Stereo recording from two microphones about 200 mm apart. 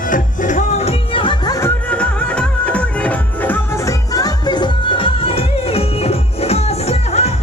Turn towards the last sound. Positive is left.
turn(degrees=30)  # may be behind; listen again after turning